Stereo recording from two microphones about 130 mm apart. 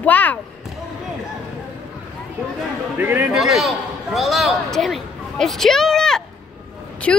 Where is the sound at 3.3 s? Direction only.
Centre (ahead or behind).